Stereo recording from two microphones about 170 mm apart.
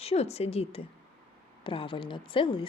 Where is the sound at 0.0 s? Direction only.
40° left (ahead or behind).